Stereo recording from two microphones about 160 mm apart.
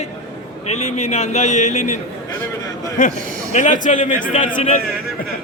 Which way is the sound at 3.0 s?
55° left (ahead or behind).